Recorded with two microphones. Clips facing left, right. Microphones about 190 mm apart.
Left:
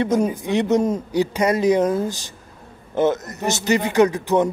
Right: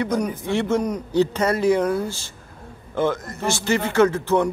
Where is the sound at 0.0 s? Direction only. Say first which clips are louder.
Left 4 dB; 25° left (ahead or behind).